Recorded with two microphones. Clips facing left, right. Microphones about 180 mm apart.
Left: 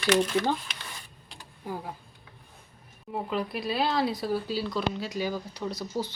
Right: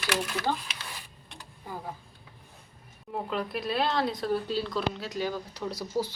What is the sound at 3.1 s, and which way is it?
Speech, 5° left (ahead or behind).